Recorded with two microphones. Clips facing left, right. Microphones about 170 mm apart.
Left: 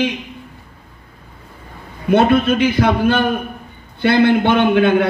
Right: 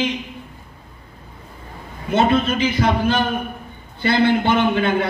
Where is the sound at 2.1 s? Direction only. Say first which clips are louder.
Left 4 dB; 60° left (ahead or behind).